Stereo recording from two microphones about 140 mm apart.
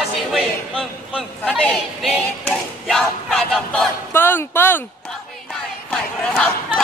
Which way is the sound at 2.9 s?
Centre (ahead or behind).